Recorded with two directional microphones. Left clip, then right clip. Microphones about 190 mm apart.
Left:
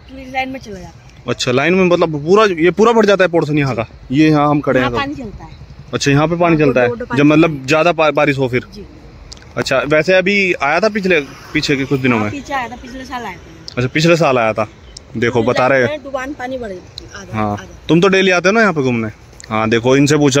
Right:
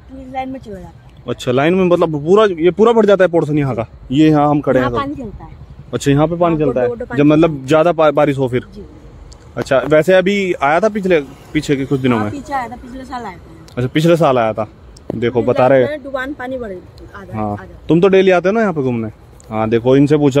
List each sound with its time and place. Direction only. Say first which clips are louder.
0.3 s speech: left 3 dB; centre (ahead or behind)
2.3 s speech: even; 5° left (ahead or behind)
6.3 s a man's voice: left 2 dB; 20° left (ahead or behind)
7.2 s speech: even; centre (ahead or behind)
10.0 s speech: even; 20° right (ahead or behind); by 14.7 s 5° right (ahead or behind)
15.1 s speech: even; 5° left (ahead or behind)
16.2 s speech: even; 25° right (ahead or behind)
16.9 s speech: left 3 dB; centre (ahead or behind)